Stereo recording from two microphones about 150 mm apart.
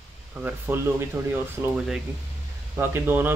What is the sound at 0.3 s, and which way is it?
Speech, 10° right (ahead or behind).